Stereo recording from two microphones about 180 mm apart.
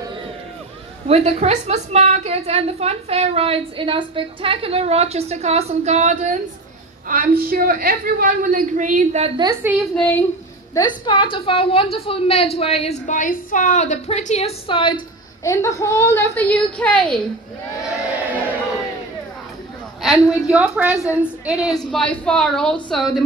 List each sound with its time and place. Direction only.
1.0 s a woman's voice: 35° right (ahead or behind)
7.1 s a woman's voice: 55° right (ahead or behind)
9.4 s a woman's voice: 20° right (ahead or behind)
10.7 s a woman's voice: 25° left (ahead or behind)
15.4 s a woman's voice: 15° left (ahead or behind)
17.8 s crowd: 5° right (ahead or behind)
20.0 s a woman's voice: centre (ahead or behind)